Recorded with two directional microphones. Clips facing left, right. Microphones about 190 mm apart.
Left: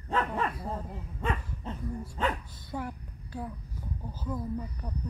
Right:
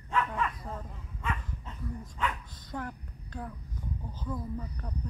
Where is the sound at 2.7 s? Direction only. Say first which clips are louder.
Left 2 dB; 10° left (ahead or behind).